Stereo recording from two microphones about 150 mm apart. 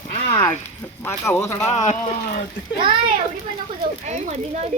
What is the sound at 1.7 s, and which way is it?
Speech, 55° left (ahead or behind).